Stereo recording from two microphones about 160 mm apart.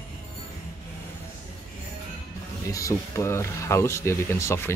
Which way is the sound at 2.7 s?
20° left (ahead or behind).